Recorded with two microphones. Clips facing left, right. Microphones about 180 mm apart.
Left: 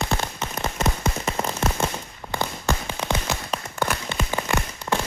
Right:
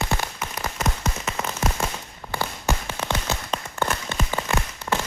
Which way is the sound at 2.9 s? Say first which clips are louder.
Left 1 dB; 10° left (ahead or behind).